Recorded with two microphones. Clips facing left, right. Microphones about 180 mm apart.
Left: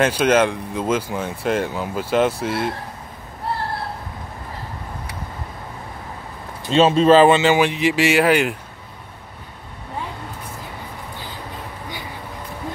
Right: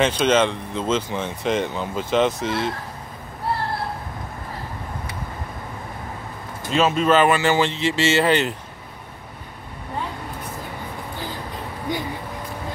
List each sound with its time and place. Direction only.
0.0 s speech: 10° left (ahead or behind)
6.7 s speech: 30° left (ahead or behind); by 8.5 s 10° left (ahead or behind)